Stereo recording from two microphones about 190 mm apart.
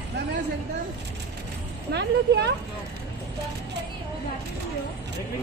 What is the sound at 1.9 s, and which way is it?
Speech, 65° right (ahead or behind).